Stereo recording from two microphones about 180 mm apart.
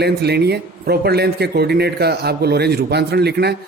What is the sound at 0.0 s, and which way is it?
Speech, 65° right (ahead or behind).